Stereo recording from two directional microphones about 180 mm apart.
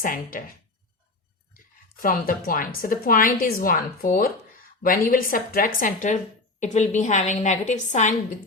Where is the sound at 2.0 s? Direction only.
50° left (ahead or behind).